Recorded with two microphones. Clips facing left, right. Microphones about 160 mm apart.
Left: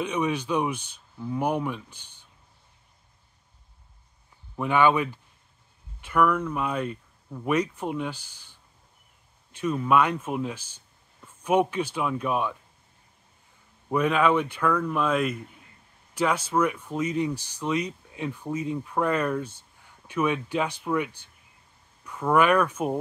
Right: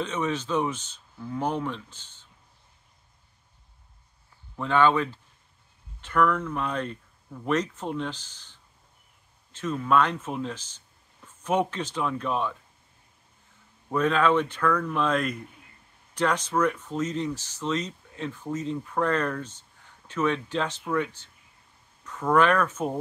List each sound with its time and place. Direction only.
0.0 s speech: 10° left (ahead or behind)
4.6 s speech: 15° left (ahead or behind)
13.8 s speech: 10° left (ahead or behind)